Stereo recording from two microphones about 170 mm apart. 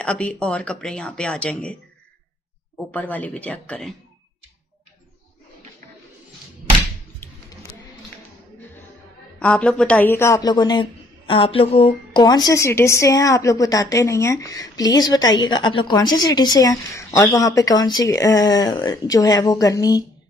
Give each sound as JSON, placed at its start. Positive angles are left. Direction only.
{"t": 0.0, "sound": "speech", "side_deg": 5}
{"t": 2.9, "sound": "speech", "side_deg": 10}
{"t": 9.4, "sound": "a woman's voice", "side_deg": 5}
{"t": 12.2, "sound": "a woman's voice", "side_deg": 25}